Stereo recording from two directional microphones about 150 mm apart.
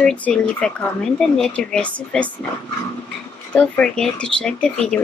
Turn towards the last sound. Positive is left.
turn(degrees=5)  # may be behind; listen again after turning